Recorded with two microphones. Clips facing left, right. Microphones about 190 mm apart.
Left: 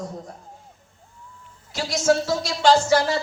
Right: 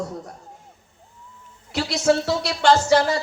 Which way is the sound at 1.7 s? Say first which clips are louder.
Right 1 dB; 65° right (ahead or behind).